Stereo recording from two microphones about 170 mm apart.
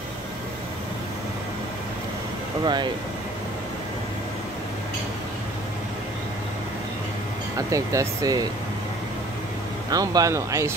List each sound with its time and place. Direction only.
2.6 s speech: 25° right (ahead or behind)
7.5 s speech: 20° right (ahead or behind)
9.8 s speech: 20° right (ahead or behind)